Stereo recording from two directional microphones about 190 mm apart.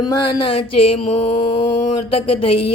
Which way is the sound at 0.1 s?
20° left (ahead or behind).